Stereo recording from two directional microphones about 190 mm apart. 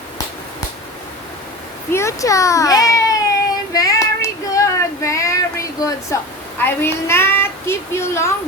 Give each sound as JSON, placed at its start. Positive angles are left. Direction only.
{"t": 1.9, "sound": "speech", "side_deg": 15}
{"t": 3.8, "sound": "child singing", "side_deg": 20}
{"t": 6.6, "sound": "speech", "side_deg": 10}